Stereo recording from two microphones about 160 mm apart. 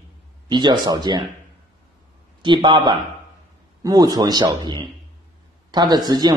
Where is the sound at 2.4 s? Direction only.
30° right (ahead or behind).